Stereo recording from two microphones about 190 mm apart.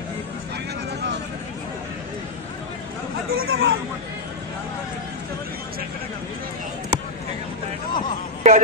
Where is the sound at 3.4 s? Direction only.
90° right.